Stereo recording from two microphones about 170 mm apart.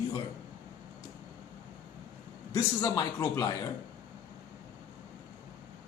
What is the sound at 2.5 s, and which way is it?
A man's voice, 20° left (ahead or behind).